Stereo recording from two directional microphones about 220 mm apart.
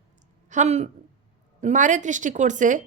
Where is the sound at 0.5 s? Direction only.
30° right (ahead or behind).